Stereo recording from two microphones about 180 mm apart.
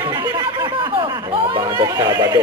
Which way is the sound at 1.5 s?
20° right (ahead or behind).